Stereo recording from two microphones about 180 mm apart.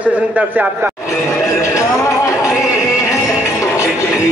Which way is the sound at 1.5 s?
15° left (ahead or behind).